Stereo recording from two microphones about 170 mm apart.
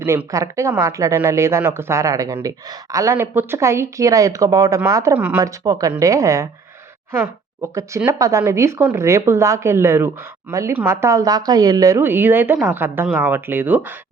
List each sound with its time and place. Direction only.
0.0 s speech: 15° right (ahead or behind)
7.6 s speech: 15° right (ahead or behind)